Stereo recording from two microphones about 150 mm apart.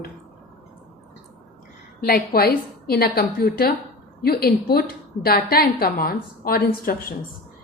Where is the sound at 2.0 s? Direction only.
90° left.